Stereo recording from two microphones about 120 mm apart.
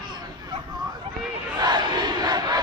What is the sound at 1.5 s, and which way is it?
Battle cry, 40° right (ahead or behind).